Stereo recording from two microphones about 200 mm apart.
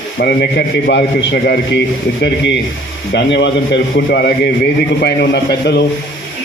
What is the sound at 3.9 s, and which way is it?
A man's voice, 50° left (ahead or behind).